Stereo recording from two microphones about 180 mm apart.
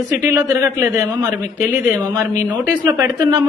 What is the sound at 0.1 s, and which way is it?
A woman's voice, 10° right (ahead or behind).